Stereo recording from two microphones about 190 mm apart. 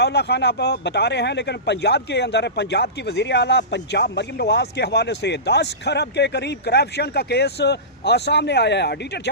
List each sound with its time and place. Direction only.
0.0 s speech: 60° left (ahead or behind)